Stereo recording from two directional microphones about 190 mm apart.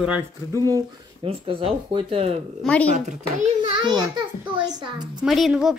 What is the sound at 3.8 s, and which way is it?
Speech, 20° right (ahead or behind).